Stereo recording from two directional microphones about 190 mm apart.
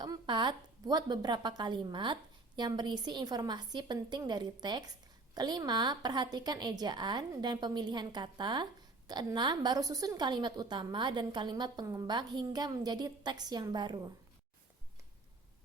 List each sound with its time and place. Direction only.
0.0 s a woman's voice: 25° right (ahead or behind)